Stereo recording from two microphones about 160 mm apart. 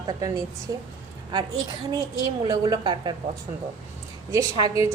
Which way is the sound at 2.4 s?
25° right (ahead or behind).